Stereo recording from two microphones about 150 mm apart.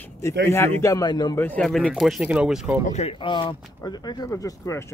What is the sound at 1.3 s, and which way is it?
Speech, 10° left (ahead or behind).